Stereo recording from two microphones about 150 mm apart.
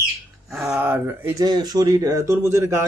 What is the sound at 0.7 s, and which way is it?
Speech, 15° right (ahead or behind).